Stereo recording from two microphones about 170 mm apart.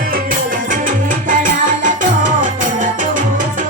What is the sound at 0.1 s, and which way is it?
Music, 55° right (ahead or behind).